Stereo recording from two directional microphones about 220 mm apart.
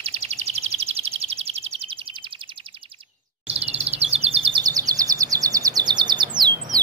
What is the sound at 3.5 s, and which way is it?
Bird vocalization, 30° right (ahead or behind).